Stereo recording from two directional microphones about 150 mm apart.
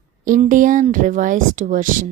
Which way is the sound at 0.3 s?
60° right (ahead or behind).